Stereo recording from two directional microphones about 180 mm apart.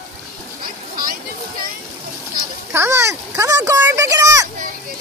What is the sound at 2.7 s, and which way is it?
Speech, 15° right (ahead or behind).